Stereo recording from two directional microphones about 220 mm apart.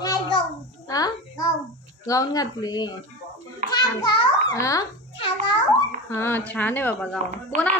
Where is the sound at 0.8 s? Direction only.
15° left (ahead or behind).